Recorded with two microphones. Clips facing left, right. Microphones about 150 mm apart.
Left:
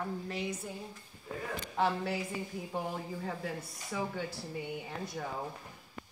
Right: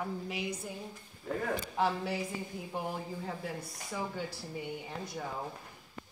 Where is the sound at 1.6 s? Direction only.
5° right (ahead or behind).